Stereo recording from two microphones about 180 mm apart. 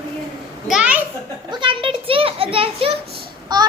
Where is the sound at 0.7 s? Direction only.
5° right (ahead or behind).